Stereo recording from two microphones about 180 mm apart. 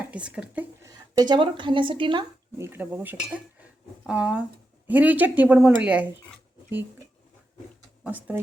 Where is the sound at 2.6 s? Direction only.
10° right (ahead or behind).